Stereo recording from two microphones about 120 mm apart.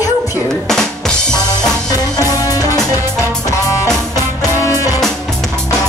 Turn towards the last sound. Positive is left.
turn(degrees=30)  # may be behind; listen again after turning